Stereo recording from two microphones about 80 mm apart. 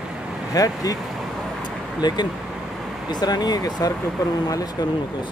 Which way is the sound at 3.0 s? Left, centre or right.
Left.